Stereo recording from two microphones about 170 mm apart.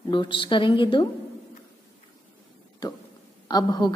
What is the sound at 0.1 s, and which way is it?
Speech, 30° left (ahead or behind).